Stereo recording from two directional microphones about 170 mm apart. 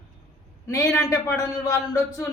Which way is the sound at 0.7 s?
20° left (ahead or behind).